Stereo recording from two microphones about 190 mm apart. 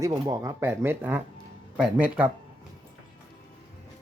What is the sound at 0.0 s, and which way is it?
Speech, 15° right (ahead or behind).